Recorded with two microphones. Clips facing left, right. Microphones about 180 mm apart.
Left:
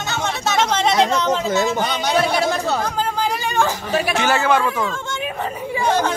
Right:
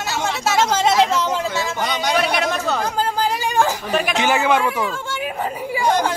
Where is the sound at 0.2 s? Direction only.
5° right (ahead or behind).